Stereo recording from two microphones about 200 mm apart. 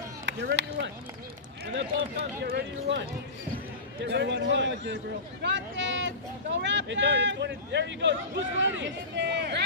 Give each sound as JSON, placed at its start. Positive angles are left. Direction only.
{"t": 0.2, "sound": "speech", "side_deg": -65}
{"t": 2.4, "sound": "speech", "side_deg": -60}